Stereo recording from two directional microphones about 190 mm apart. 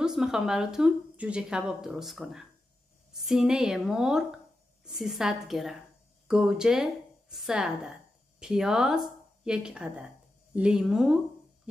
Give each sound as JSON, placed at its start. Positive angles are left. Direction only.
{"t": 0.0, "sound": "a woman's voice", "side_deg": -5}